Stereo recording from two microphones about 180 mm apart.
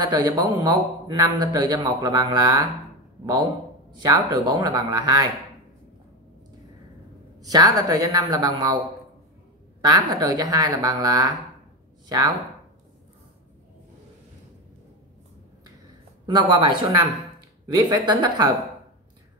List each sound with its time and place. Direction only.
0.0 s a man's voice: 25° right (ahead or behind)
3.9 s a man's voice: 25° right (ahead or behind)
7.3 s a man's voice: 20° right (ahead or behind)
9.8 s a man's voice: 25° right (ahead or behind)
16.3 s a man's voice: 25° right (ahead or behind)